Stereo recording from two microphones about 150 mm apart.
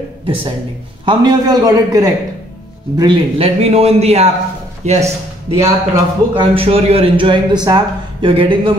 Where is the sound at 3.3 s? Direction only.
40° right (ahead or behind).